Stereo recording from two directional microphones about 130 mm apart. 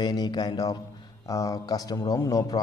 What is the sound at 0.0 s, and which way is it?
A man's voice, 35° left (ahead or behind).